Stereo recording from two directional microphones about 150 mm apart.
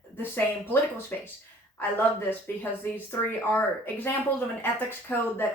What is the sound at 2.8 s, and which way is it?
Speech, 15° left (ahead or behind).